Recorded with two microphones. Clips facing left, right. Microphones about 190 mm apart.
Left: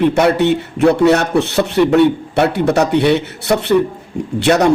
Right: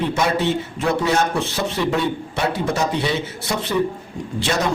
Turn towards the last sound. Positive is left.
turn(degrees=65)  # may be behind; listen again after turning